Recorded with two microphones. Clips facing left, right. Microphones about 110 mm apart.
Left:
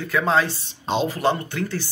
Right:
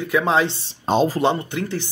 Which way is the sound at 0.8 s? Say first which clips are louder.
Right 5 dB; 45° right (ahead or behind).